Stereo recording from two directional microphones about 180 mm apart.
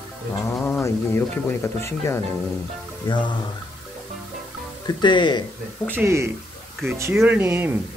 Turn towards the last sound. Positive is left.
turn(degrees=-10)  # may be behind; listen again after turning